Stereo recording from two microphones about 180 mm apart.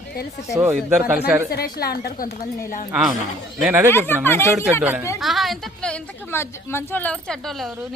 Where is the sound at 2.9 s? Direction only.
Centre (ahead or behind).